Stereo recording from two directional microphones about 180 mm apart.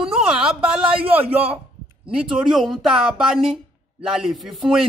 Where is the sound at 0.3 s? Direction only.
5° right (ahead or behind).